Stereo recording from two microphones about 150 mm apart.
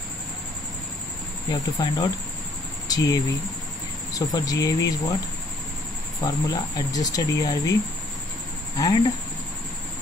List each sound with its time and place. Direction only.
1.5 s speech: 30° left (ahead or behind)
6.2 s speech: 25° left (ahead or behind)
8.7 s speech: 25° left (ahead or behind)